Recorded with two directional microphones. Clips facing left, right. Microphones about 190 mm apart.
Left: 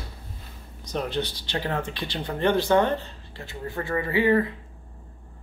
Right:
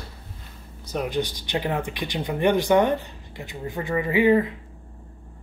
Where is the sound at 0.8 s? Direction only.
10° right (ahead or behind).